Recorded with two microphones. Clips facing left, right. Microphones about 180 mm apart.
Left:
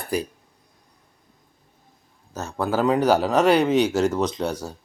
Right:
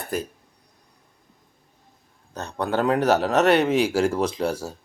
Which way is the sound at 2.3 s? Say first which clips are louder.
Left 1 dB; 5° left (ahead or behind).